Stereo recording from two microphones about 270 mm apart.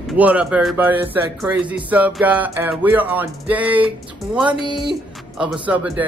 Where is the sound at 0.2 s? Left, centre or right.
Centre.